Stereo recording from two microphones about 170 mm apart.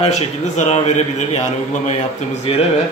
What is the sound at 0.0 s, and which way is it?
A man's voice, 40° left (ahead or behind).